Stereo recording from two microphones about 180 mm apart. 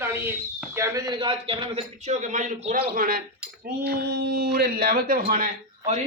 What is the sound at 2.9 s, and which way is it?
Speech, 55° right (ahead or behind).